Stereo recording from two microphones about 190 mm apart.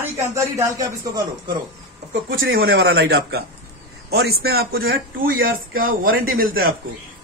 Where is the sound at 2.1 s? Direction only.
70° right (ahead or behind).